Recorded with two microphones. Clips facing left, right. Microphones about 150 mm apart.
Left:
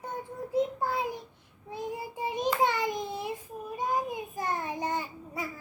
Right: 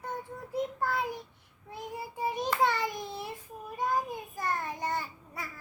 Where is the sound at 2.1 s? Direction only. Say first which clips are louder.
Left 1 dB; 15° left (ahead or behind).